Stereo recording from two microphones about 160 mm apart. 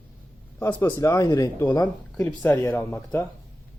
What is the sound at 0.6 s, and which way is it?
Speech, 15° left (ahead or behind).